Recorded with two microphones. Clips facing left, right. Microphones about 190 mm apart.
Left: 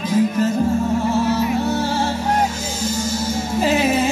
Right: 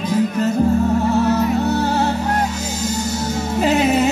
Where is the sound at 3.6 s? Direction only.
65° right (ahead or behind).